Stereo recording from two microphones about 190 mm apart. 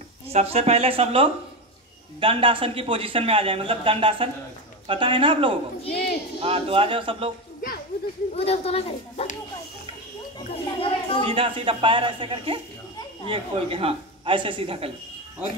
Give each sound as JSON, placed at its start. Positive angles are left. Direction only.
{"t": 0.3, "sound": "a man's voice", "side_deg": -30}
{"t": 5.9, "sound": "speech", "side_deg": 55}
{"t": 6.4, "sound": "a man's voice", "side_deg": -30}
{"t": 8.4, "sound": "speech", "side_deg": 30}
{"t": 10.5, "sound": "speech", "side_deg": 30}
{"t": 11.2, "sound": "a man's voice", "side_deg": -30}